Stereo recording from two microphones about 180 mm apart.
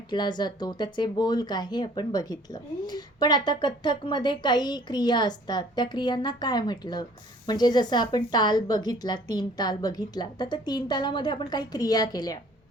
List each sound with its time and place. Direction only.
0.1 s speech: 25° left (ahead or behind)